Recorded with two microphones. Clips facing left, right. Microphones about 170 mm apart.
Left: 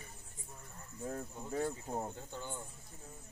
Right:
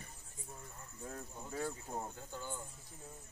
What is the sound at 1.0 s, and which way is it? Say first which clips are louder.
Speech: left 5 dB; 40° left (ahead or behind).